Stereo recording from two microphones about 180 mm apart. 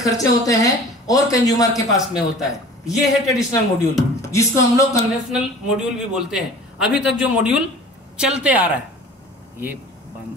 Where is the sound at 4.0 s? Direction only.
15° left (ahead or behind).